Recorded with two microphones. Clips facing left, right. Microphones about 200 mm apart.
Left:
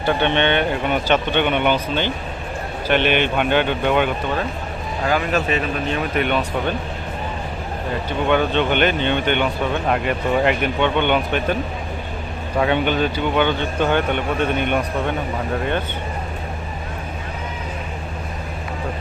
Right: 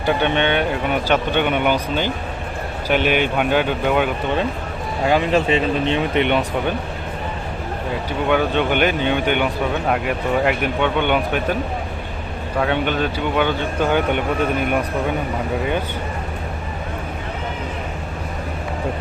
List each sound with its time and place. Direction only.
0.0 s speech: 5° right (ahead or behind)
5.0 s speech: 25° right (ahead or behind)
8.3 s speech: 10° right (ahead or behind)
12.5 s speech: centre (ahead or behind)